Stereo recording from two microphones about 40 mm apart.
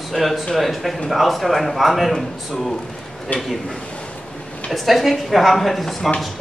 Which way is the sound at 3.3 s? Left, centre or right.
Left.